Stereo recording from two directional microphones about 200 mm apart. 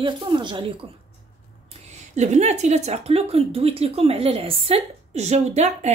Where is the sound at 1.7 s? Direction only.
35° right (ahead or behind).